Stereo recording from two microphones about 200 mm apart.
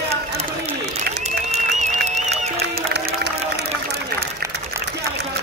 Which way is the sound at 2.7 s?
55° right (ahead or behind).